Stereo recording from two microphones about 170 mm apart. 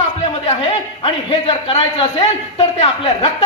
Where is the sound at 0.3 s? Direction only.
35° left (ahead or behind).